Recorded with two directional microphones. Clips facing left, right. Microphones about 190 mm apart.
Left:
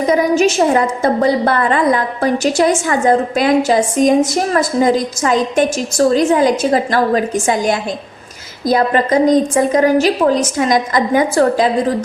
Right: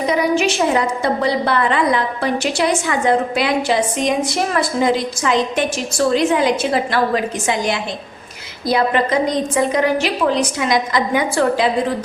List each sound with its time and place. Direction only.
0.0 s a woman's voice: 45° left (ahead or behind)